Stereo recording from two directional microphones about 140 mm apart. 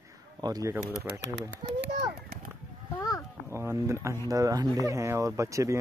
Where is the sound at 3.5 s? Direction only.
15° right (ahead or behind).